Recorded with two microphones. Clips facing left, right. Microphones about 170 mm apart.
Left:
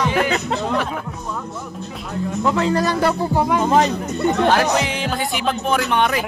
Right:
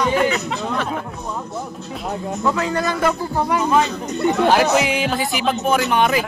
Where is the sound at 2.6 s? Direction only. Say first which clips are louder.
Left 3 dB; 30° left (ahead or behind).